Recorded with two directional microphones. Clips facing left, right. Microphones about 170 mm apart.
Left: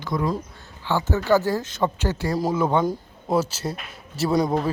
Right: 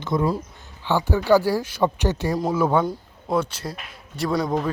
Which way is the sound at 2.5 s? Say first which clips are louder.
Right 2 dB; 5° right (ahead or behind).